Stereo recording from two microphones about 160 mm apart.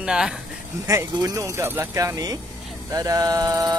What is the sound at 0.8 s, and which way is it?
Speech, 20° right (ahead or behind).